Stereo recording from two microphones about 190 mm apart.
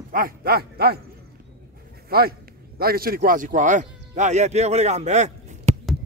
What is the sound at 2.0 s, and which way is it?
Speech, 55° right (ahead or behind).